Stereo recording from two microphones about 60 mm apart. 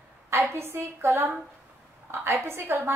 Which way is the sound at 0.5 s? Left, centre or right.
Right.